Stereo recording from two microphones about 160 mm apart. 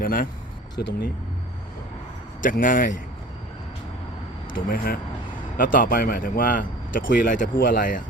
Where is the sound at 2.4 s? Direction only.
55° left (ahead or behind).